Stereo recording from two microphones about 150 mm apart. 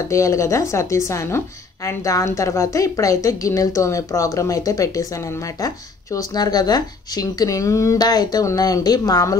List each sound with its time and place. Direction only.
0.1 s a woman's voice: 20° left (ahead or behind)